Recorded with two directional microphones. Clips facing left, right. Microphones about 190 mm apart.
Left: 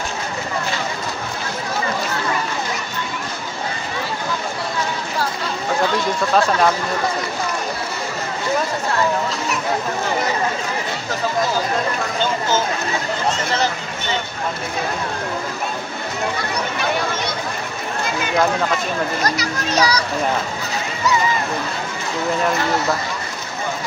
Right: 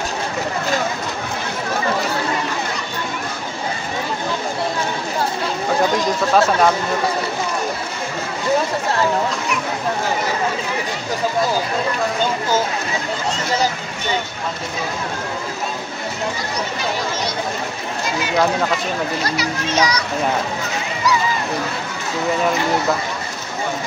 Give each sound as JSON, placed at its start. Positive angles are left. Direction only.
{"t": 6.3, "sound": "speech", "side_deg": 0}
{"t": 19.2, "sound": "a child's voice", "side_deg": 40}